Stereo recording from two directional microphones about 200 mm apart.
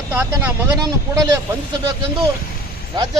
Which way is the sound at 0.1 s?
10° right (ahead or behind).